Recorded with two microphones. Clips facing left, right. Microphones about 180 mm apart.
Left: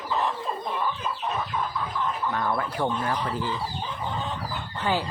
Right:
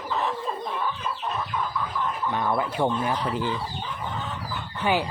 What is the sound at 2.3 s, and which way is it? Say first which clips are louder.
Speech: right 4 dB; 15° right (ahead or behind).